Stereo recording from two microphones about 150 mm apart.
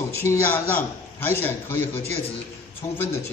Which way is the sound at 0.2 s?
15° left (ahead or behind).